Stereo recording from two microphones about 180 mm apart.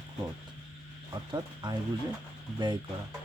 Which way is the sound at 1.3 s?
25° right (ahead or behind).